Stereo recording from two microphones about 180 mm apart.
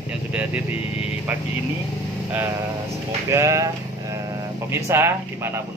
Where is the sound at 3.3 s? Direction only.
15° right (ahead or behind).